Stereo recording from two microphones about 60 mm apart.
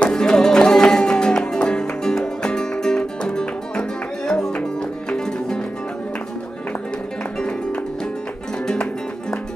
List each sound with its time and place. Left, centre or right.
0.0 s music: centre
7.3 s music: centre